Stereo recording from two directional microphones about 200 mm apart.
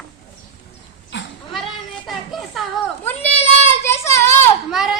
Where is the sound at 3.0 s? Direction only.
10° left (ahead or behind).